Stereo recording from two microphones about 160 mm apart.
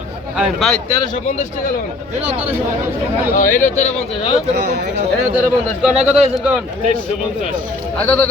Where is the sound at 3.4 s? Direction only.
55° left (ahead or behind).